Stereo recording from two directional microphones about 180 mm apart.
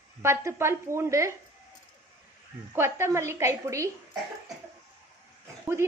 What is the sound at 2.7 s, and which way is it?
A woman's voice, 15° right (ahead or behind).